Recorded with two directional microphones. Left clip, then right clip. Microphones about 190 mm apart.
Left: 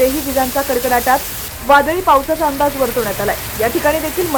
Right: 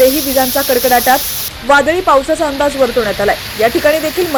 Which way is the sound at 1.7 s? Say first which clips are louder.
Right 1 dB; 15° right (ahead or behind).